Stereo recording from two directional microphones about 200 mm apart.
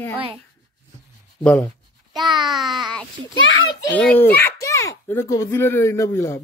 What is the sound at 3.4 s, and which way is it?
Speech, 70° left (ahead or behind).